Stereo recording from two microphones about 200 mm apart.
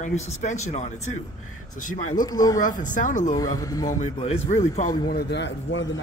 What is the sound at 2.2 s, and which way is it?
Speech, 15° left (ahead or behind).